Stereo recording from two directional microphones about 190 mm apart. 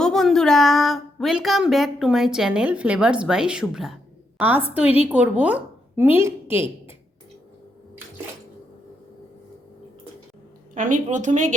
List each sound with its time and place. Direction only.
0.0 s a woman's voice: centre (ahead or behind)
10.8 s a woman's voice: 45° right (ahead or behind)